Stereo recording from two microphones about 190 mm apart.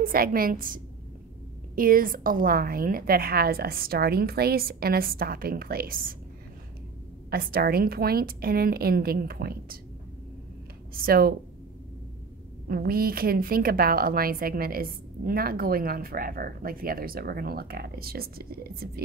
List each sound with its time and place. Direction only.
0.0 s a woman's voice: 50° right (ahead or behind)
1.8 s a woman's voice: 50° right (ahead or behind)
7.2 s a woman's voice: 50° right (ahead or behind)
10.9 s a woman's voice: 50° right (ahead or behind)
12.6 s a woman's voice: 50° right (ahead or behind)